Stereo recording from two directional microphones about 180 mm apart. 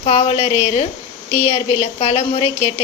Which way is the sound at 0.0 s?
35° left (ahead or behind).